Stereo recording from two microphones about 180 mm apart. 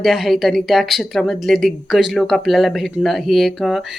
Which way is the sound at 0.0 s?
Centre (ahead or behind).